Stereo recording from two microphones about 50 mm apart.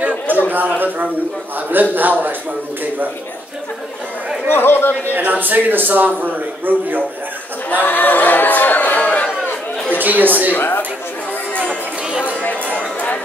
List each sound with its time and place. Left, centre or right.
0.5 s a man's voice: right
4.5 s speech: left
5.1 s a man's voice: right
7.8 s chatter: left
9.8 s a sound: right
10.5 s speech: left
12.3 s music: left